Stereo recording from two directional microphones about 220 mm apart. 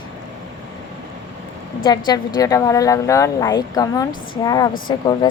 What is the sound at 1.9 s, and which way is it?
A woman's voice, 20° left (ahead or behind).